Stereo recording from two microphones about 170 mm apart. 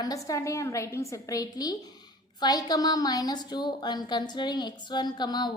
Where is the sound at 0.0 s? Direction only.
20° left (ahead or behind).